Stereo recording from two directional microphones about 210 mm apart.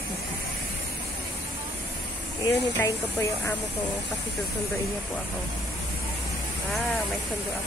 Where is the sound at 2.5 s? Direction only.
15° left (ahead or behind).